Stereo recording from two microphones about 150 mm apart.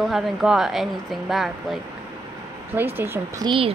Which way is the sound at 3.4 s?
35° right (ahead or behind).